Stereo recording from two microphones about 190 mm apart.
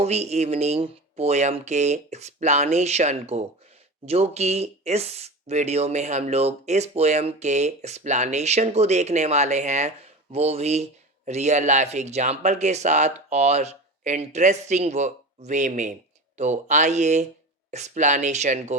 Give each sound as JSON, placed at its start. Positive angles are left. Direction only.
{"t": 0.0, "sound": "speech", "side_deg": -35}